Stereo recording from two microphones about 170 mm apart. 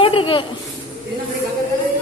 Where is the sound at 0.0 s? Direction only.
30° left (ahead or behind).